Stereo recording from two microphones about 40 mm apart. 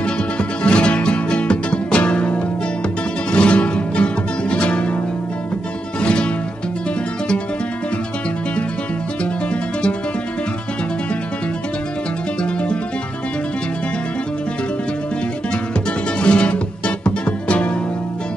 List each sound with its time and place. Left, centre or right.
0.0 s music: left
5.9 s music: left
16.2 s music: left